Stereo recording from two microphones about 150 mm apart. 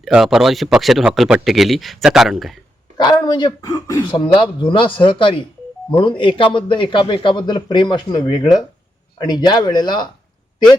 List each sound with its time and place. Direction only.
0.0 s speech: 5° right (ahead or behind)
3.0 s speech: 30° left (ahead or behind)
3.7 s speech: 20° left (ahead or behind)
4.1 s speech: 35° left (ahead or behind)